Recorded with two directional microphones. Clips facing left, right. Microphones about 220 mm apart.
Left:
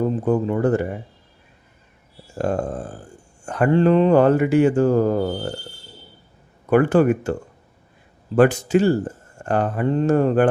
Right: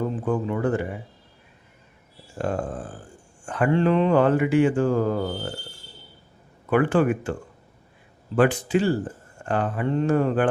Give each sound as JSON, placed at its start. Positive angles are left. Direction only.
{"t": 0.3, "sound": "mantra", "side_deg": 40}
{"t": 2.4, "sound": "mantra", "side_deg": 40}
{"t": 6.7, "sound": "speech", "side_deg": 40}
{"t": 8.4, "sound": "speech", "side_deg": 45}